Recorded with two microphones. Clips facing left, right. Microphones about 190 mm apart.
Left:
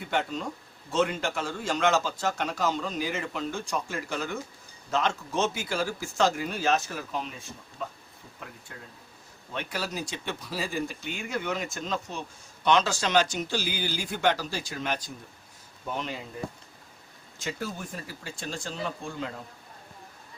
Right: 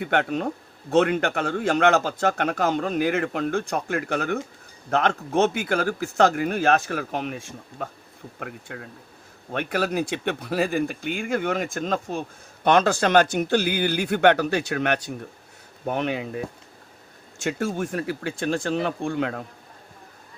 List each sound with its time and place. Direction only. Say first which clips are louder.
0.0 s a man's voice: right 6 dB; 60° right (ahead or behind)
17.4 s a man's voice: right 9 dB; 75° right (ahead or behind)